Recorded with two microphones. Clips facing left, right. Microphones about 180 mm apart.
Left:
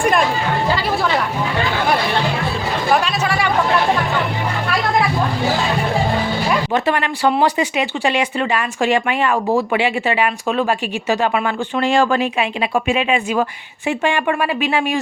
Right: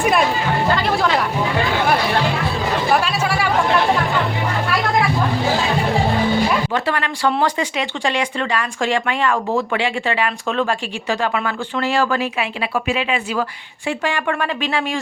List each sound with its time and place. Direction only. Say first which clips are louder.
0.7 s speech: right 2 dB; 5° left (ahead or behind)
2.9 s chatter: left 3 dB; 5° right (ahead or behind)
6.7 s speech: left 3 dB; 15° left (ahead or behind)